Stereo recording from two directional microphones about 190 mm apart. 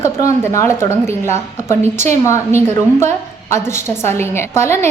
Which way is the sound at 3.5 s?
15° left (ahead or behind).